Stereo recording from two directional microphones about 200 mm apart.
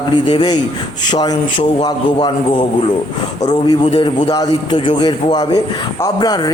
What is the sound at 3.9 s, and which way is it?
A man's voice, 25° left (ahead or behind).